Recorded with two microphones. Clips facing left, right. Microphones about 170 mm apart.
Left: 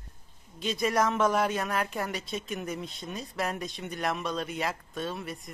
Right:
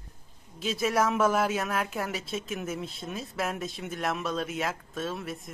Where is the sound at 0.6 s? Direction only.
5° right (ahead or behind).